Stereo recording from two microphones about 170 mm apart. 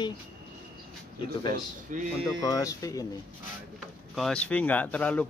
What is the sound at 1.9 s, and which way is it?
Speech, 50° right (ahead or behind).